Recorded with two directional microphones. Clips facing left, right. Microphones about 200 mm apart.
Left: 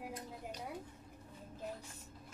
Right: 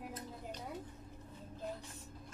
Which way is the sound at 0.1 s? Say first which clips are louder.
Even; 10° left (ahead or behind).